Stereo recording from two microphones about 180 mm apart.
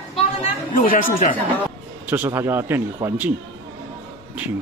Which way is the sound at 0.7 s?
50° left (ahead or behind).